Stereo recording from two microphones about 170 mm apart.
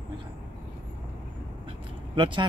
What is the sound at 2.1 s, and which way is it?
Speech, 30° right (ahead or behind).